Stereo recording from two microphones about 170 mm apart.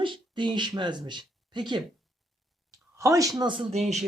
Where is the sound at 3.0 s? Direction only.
20° right (ahead or behind); by 4.0 s 40° right (ahead or behind).